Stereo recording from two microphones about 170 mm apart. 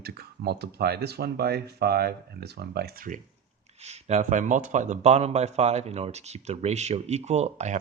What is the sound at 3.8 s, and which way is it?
Speech, 40° right (ahead or behind).